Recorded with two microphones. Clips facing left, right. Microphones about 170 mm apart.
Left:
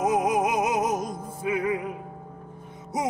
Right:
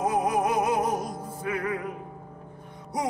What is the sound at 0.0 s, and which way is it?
Music, 15° left (ahead or behind).